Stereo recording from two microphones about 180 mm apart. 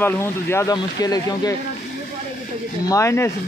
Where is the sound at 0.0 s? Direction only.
15° left (ahead or behind).